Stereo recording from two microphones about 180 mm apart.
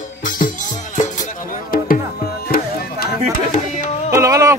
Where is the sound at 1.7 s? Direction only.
50° left (ahead or behind).